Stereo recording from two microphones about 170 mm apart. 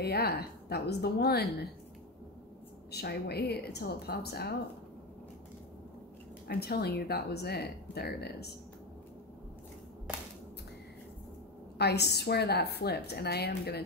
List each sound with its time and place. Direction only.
0.0 s speech: 70° left (ahead or behind)
2.9 s speech: 70° left (ahead or behind)
6.4 s speech: 65° left (ahead or behind)
11.8 s speech: 75° left (ahead or behind)